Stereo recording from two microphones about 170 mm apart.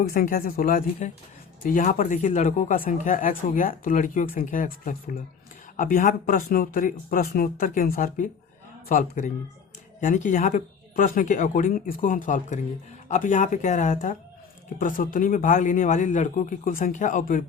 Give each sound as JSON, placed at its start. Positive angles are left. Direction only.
{"t": 0.0, "sound": "speech", "side_deg": 60}